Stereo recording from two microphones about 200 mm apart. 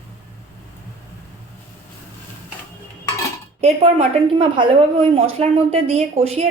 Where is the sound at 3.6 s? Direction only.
30° right (ahead or behind).